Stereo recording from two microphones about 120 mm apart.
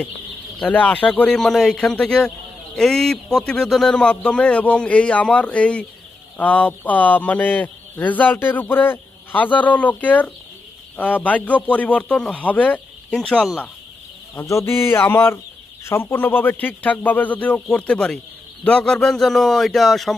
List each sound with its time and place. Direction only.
0.6 s speech: 10° left (ahead or behind)
14.3 s bird: 25° left (ahead or behind)
15.8 s a man's voice: 20° left (ahead or behind); by 20.1 s centre (ahead or behind)